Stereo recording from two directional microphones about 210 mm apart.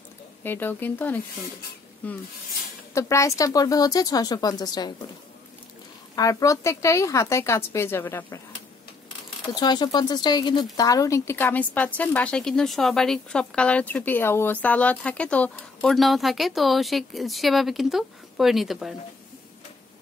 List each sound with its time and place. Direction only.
0.4 s a woman's voice: 10° left (ahead or behind)
6.1 s a woman's voice: 15° left (ahead or behind)
9.5 s speech: 20° left (ahead or behind); by 18.9 s centre (ahead or behind)